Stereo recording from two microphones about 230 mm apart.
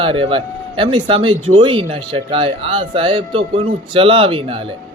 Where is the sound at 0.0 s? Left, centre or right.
Right.